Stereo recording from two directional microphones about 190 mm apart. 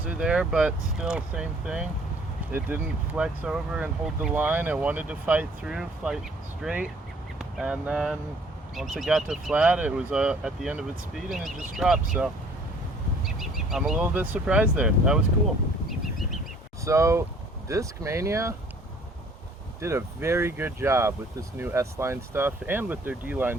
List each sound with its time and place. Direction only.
0.0 s speech: 5° right (ahead or behind)
16.8 s speech: 15° right (ahead or behind)
19.8 s speech: 15° right (ahead or behind)